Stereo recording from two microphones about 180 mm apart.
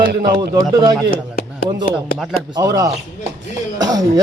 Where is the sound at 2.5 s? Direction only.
20° right (ahead or behind).